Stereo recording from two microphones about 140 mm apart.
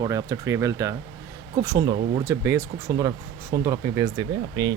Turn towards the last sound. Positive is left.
turn(degrees=-25)  # may be behind; listen again after turning